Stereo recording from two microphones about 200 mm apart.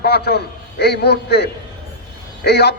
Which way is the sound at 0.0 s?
55° left (ahead or behind).